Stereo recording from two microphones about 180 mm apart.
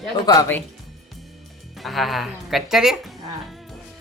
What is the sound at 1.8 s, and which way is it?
A woman's voice, centre (ahead or behind).